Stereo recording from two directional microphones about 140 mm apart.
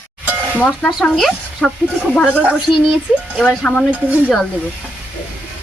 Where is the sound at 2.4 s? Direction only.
5° right (ahead or behind).